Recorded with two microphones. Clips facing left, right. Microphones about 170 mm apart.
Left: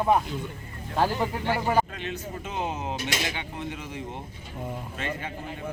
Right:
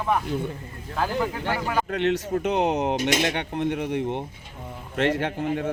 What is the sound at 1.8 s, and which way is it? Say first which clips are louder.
A man's voice: right 11 dB; 70° right (ahead or behind).